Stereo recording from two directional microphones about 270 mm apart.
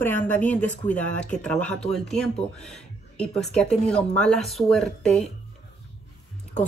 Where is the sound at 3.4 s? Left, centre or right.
Centre.